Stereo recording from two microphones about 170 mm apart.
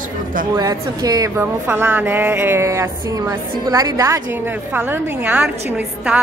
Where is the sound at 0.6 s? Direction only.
20° right (ahead or behind).